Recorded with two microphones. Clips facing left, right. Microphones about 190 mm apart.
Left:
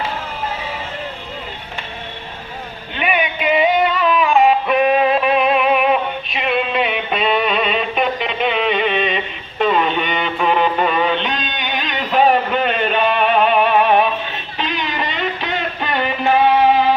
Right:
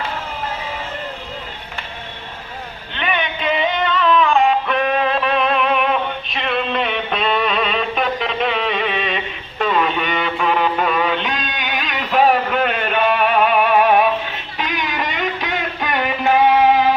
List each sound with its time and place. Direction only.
2.9 s music: 10° left (ahead or behind); by 16.3 s 15° right (ahead or behind)